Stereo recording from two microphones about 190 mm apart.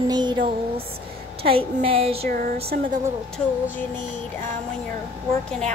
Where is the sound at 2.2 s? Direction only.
50° right (ahead or behind).